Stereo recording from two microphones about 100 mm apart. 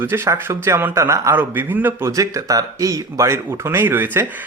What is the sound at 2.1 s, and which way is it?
Speech, 35° right (ahead or behind).